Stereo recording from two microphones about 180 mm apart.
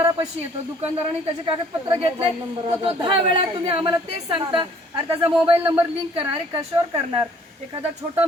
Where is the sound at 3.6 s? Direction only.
30° right (ahead or behind).